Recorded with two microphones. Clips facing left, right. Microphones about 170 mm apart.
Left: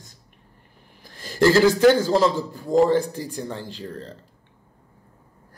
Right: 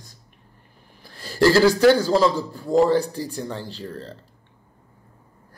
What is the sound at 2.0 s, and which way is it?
Speech, 20° left (ahead or behind).